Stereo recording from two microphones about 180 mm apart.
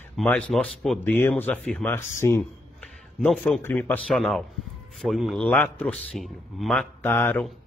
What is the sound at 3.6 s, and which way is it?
A man's voice, 10° left (ahead or behind).